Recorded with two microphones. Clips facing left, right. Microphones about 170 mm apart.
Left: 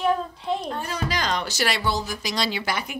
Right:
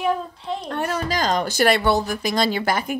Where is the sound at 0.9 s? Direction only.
45° right (ahead or behind).